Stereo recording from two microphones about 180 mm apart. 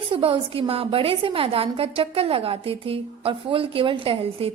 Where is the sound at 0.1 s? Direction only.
30° right (ahead or behind).